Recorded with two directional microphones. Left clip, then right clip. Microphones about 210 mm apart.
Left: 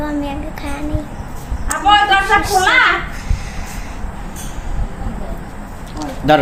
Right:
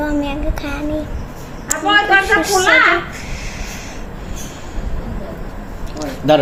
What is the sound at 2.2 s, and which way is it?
Speech, 10° right (ahead or behind).